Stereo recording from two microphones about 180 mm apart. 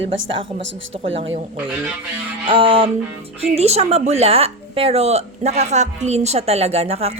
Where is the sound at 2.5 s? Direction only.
30° right (ahead or behind).